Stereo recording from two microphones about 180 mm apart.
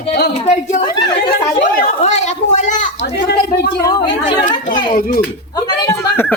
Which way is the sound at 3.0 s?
65° left (ahead or behind).